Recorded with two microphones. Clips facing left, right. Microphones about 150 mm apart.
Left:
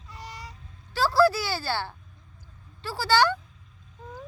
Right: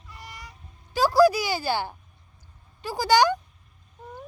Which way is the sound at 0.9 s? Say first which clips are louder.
Right 3 dB; 15° right (ahead or behind).